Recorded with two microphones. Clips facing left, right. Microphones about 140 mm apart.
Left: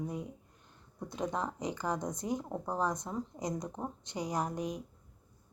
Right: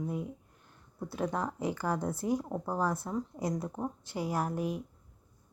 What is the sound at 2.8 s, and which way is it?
Speech, 15° left (ahead or behind).